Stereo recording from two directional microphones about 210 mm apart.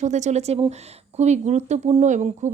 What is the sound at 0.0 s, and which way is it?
Speech, 35° right (ahead or behind).